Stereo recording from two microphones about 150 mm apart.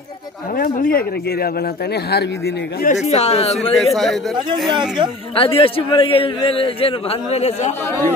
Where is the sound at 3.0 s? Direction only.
45° left (ahead or behind).